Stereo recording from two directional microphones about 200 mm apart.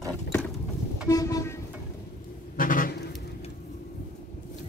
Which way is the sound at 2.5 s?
40° left (ahead or behind).